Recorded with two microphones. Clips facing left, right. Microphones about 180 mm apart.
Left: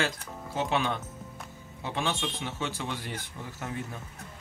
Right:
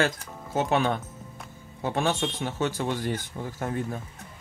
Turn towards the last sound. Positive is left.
turn(degrees=-45)  # may be behind; listen again after turning